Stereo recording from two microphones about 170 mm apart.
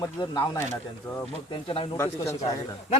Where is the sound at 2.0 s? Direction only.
15° left (ahead or behind).